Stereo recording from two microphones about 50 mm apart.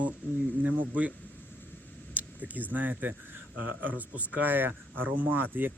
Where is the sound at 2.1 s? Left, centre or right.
Right.